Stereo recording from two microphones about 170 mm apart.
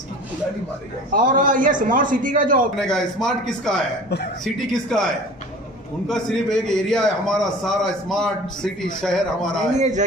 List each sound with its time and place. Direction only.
1.1 s a man's voice: 50° right (ahead or behind)
2.8 s a man's voice: 5° left (ahead or behind)
4.8 s a man's voice: 5° left (ahead or behind)
9.8 s a man's voice: 45° right (ahead or behind)